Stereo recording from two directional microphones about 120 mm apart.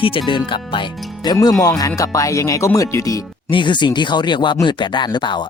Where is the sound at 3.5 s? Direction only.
40° left (ahead or behind).